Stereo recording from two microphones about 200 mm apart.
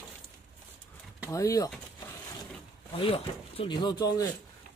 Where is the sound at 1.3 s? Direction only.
15° left (ahead or behind).